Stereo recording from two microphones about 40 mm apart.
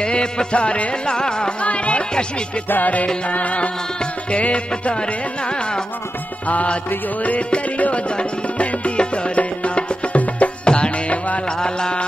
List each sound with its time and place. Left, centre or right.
0.0 s music: left
1.6 s speech: left
2.7 s music: left
6.4 s speech: left
8.1 s music: left
10.6 s music: left
11.1 s music: left
11.4 s music: centre